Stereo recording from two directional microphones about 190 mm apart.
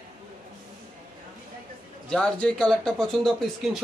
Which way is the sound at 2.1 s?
5° left (ahead or behind).